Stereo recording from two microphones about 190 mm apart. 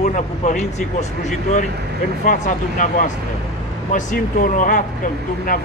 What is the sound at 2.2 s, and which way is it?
Speech, 45° left (ahead or behind).